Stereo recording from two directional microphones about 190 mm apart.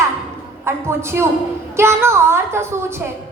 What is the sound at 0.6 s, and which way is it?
A woman's voice, 15° right (ahead or behind).